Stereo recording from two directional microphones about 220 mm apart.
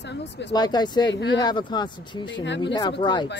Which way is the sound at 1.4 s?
20° left (ahead or behind).